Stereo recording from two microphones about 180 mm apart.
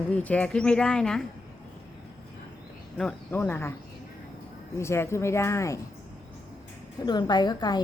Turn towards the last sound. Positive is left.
turn(degrees=25)  # may be behind; listen again after turning